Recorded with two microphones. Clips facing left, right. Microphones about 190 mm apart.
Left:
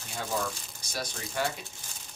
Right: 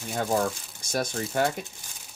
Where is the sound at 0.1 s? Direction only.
55° right (ahead or behind).